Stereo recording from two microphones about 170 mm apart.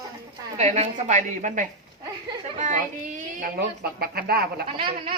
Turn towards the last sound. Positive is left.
turn(degrees=-30)  # may be behind; listen again after turning